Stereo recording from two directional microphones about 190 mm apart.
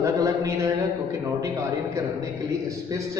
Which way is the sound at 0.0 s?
15° right (ahead or behind).